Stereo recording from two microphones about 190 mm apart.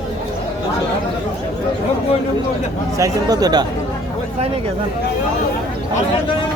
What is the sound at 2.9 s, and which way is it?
Speech, 20° right (ahead or behind).